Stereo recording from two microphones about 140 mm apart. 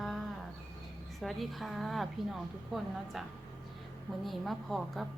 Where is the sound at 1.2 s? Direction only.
Centre (ahead or behind).